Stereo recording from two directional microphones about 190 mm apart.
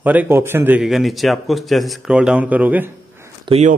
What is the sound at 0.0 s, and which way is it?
A man's voice, 10° right (ahead or behind).